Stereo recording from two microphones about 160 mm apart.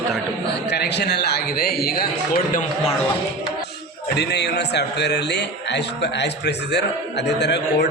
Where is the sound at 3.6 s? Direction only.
90° left.